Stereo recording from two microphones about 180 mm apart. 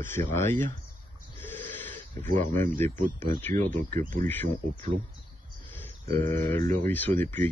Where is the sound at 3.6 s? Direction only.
50° right (ahead or behind).